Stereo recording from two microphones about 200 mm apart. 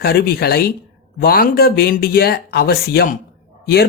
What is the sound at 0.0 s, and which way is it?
Speech, 50° left (ahead or behind).